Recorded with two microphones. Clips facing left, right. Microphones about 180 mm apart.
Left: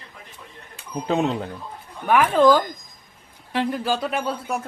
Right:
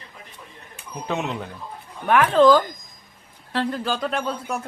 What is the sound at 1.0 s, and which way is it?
Speech, 30° left (ahead or behind).